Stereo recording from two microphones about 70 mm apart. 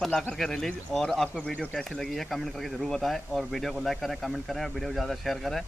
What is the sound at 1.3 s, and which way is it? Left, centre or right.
Speech, centre.